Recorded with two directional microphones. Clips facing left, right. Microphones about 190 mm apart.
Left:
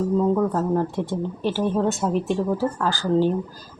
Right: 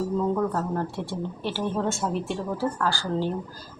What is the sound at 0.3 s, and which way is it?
Speech, 15° left (ahead or behind).